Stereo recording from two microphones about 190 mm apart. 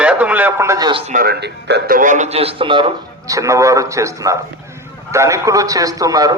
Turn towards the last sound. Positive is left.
turn(degrees=-20)  # may be behind; listen again after turning